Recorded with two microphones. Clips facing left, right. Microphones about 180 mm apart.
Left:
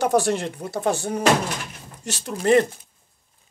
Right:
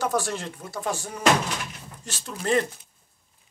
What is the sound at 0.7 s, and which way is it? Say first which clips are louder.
Speech: left 7 dB; 65° left (ahead or behind).